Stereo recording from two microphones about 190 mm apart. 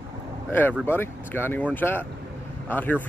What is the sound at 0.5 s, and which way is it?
Speech, 10° left (ahead or behind).